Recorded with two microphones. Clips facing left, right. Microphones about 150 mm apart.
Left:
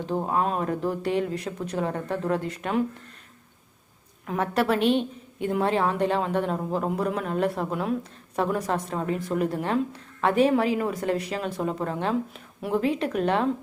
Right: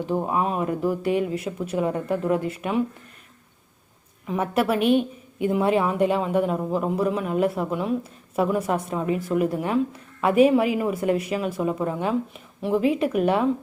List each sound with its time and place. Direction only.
0.0 s a woman's voice: 10° right (ahead or behind)
4.3 s a woman's voice: 10° right (ahead or behind)